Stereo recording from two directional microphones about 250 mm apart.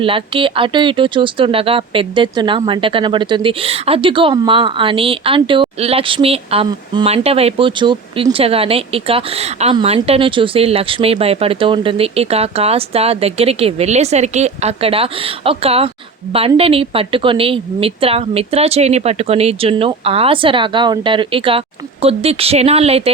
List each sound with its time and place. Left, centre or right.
0.0 s speech: right